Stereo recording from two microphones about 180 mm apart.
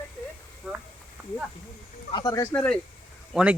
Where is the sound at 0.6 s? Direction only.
5° right (ahead or behind).